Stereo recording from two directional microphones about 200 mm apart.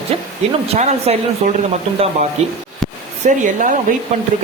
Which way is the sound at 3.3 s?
40° right (ahead or behind).